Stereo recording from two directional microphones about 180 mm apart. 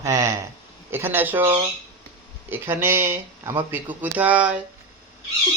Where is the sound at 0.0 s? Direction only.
15° right (ahead or behind).